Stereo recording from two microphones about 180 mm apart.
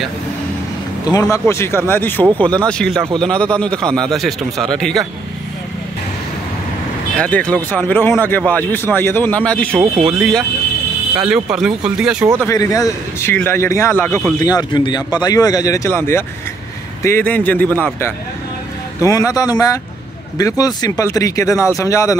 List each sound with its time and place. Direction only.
1.3 s speech: 15° left (ahead or behind)
7.2 s speech: 5° left (ahead or behind)
12.4 s a man's voice: 20° left (ahead or behind)